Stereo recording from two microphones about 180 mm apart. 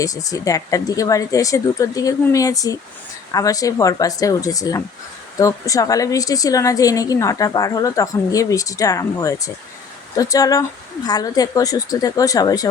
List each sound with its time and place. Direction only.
0.0 s a woman's voice: 20° left (ahead or behind)